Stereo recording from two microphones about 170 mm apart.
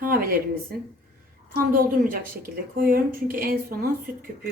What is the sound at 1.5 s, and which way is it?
Speech, 60° right (ahead or behind).